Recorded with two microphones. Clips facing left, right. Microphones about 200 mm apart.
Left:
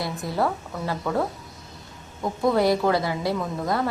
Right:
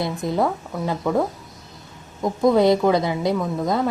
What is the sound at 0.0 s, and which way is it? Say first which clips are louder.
A woman's voice: right 4 dB; 20° right (ahead or behind).